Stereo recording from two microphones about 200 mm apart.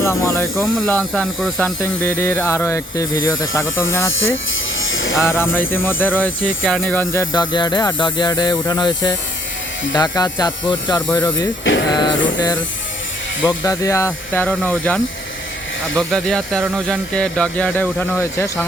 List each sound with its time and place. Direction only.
0.0 s speech: 15° left (ahead or behind)
0.5 s speech: centre (ahead or behind)
1.8 s speech: 10° left (ahead or behind)
4.8 s electric shaver: 80° left
5.2 s speech: 10° left (ahead or behind)